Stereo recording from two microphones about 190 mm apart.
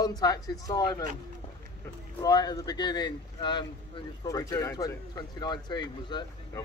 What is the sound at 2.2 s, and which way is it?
Speech, 20° left (ahead or behind).